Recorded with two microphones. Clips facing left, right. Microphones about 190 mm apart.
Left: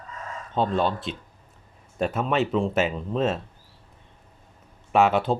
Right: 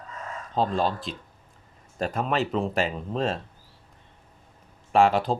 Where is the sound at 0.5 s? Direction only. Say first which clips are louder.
Left 1 dB; 35° right (ahead or behind).